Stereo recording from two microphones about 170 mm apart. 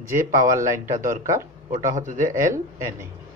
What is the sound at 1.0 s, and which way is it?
Speech, 50° right (ahead or behind).